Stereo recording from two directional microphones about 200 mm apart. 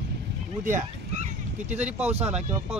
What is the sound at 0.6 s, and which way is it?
Speech, 40° right (ahead or behind).